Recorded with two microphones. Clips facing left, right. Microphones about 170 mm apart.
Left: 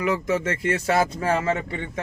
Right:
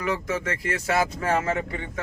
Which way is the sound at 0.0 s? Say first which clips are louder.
Left 4 dB; 20° left (ahead or behind).